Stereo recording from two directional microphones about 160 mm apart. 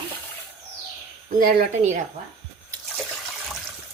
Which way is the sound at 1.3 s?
65° right (ahead or behind).